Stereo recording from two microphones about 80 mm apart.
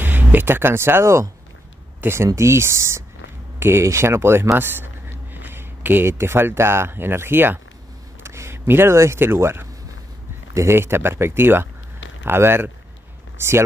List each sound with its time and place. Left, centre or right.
0.0 s speech: right
2.0 s a sound: right
2.2 s speech: right